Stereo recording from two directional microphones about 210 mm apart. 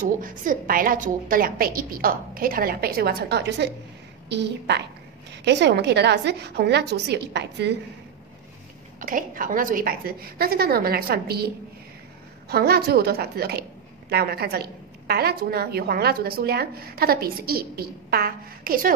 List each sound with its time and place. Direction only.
0.0 s a woman's voice: 40° right (ahead or behind)
9.0 s a woman's voice: 40° right (ahead or behind)